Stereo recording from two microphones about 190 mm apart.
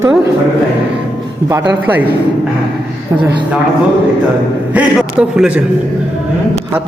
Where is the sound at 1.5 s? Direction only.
10° right (ahead or behind).